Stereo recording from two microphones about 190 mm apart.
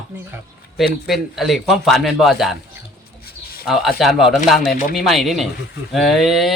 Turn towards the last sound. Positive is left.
turn(degrees=0)  # may be behind; listen again after turning